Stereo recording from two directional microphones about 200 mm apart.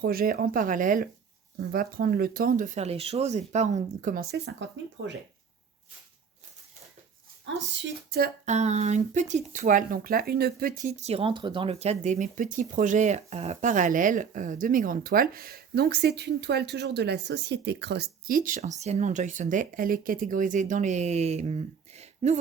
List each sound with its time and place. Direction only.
0.0 s speech: 45° right (ahead or behind)
7.7 s speech: 50° right (ahead or behind)
8.4 s speech: 35° right (ahead or behind)